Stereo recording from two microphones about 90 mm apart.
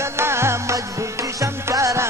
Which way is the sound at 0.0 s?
30° right (ahead or behind).